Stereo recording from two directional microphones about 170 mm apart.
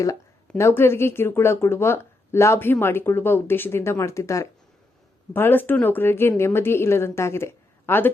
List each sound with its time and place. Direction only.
0.5 s speech: 15° left (ahead or behind)